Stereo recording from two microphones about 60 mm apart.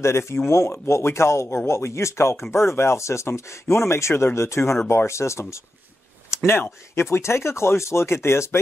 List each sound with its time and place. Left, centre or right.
0.0 s speech: left
6.3 s a sound: left
7.0 s speech: left